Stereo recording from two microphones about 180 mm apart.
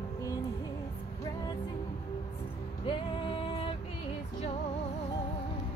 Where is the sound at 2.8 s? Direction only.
30° left (ahead or behind).